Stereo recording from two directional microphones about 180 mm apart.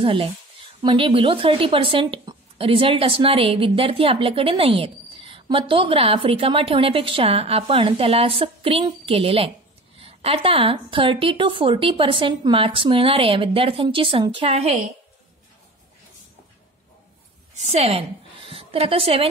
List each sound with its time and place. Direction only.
0.0 s a woman's voice: 30° right (ahead or behind)
17.6 s a woman's voice: 35° right (ahead or behind)